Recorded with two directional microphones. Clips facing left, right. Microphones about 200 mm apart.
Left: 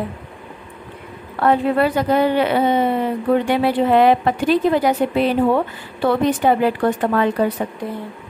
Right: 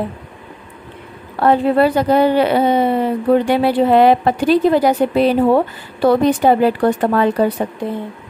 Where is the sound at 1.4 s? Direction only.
35° right (ahead or behind).